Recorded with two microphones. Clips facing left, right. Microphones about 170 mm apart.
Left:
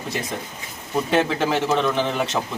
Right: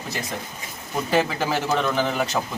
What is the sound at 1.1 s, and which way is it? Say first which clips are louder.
A man's voice: left 1 dB; centre (ahead or behind).